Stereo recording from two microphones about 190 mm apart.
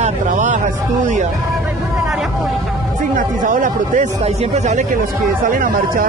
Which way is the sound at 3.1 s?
45° right (ahead or behind).